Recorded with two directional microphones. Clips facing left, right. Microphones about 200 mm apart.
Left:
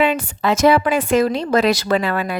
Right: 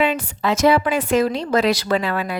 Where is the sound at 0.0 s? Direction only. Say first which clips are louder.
Left 2 dB; 55° left (ahead or behind).